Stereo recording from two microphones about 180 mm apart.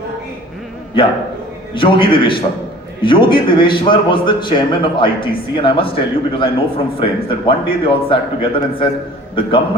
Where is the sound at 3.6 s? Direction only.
30° left (ahead or behind).